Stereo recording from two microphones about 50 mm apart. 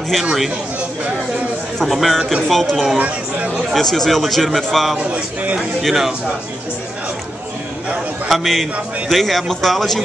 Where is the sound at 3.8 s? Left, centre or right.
Centre.